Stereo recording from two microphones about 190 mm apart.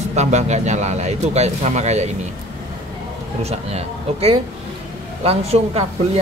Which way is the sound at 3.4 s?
35° right (ahead or behind).